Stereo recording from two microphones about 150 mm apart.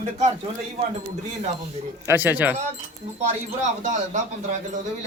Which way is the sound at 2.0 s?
15° right (ahead or behind).